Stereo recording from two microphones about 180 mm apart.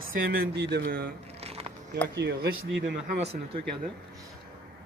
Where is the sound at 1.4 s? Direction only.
35° right (ahead or behind).